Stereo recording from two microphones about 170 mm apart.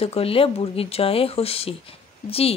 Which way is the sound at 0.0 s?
35° left (ahead or behind).